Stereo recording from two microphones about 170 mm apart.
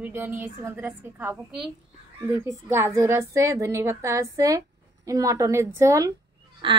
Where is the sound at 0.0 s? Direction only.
10° right (ahead or behind).